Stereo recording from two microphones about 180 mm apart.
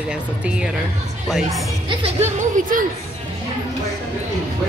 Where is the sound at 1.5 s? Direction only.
30° right (ahead or behind); by 2.9 s 45° right (ahead or behind).